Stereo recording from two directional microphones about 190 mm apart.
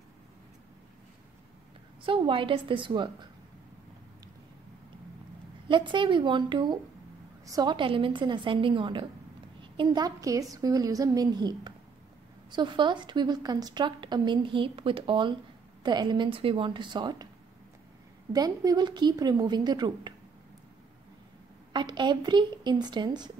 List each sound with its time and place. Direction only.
2.0 s a woman's voice: 25° right (ahead or behind)
5.7 s a woman's voice: 25° right (ahead or behind)
18.3 s a woman's voice: 20° right (ahead or behind)
21.7 s a woman's voice: 25° right (ahead or behind)